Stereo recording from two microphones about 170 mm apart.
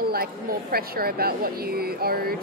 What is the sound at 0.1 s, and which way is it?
Speech, 60° right (ahead or behind).